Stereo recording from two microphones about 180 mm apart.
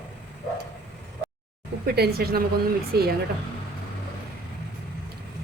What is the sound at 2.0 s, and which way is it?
Speech, 60° right (ahead or behind).